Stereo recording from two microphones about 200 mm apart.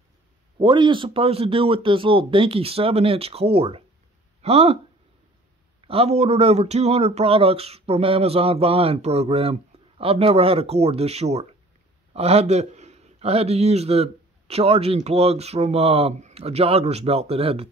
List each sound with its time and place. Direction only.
0.6 s speech: 25° right (ahead or behind)
5.8 s speech: 30° right (ahead or behind)